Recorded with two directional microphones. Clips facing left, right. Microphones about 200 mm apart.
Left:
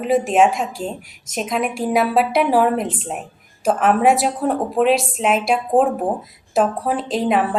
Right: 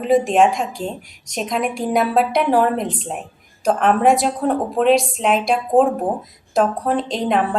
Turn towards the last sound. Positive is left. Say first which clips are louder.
# left 1 dB
turn(degrees=5)  # may be behind; listen again after turning